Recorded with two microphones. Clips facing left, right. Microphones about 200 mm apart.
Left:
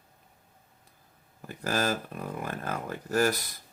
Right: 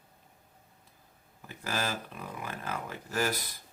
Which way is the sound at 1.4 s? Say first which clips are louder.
Left 5 dB; 45° left (ahead or behind).